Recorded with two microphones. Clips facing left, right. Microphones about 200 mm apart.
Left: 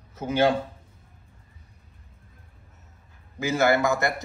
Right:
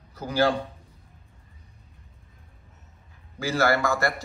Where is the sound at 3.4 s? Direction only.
20° left (ahead or behind).